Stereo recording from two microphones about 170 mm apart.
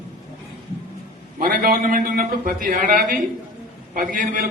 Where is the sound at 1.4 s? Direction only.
60° right (ahead or behind).